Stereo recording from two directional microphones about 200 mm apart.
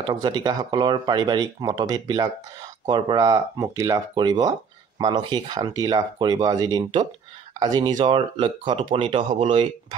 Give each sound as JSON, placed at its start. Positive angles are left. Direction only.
{"t": 0.0, "sound": "speech", "side_deg": -20}